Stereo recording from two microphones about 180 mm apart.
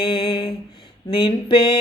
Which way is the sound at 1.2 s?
25° left (ahead or behind).